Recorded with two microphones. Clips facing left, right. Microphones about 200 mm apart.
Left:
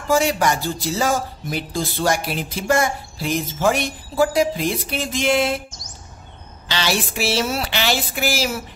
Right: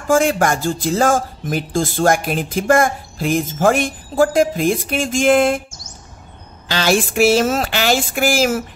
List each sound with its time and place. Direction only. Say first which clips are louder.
0.1 s speech: right 3 dB; 50° right (ahead or behind)
6.7 s speech: right 6 dB; 50° right (ahead or behind)